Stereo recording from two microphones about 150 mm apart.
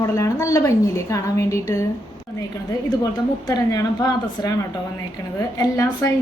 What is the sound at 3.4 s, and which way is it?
A woman's voice, 25° left (ahead or behind).